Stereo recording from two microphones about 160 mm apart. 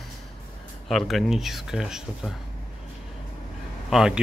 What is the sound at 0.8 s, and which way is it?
A man's voice, centre (ahead or behind).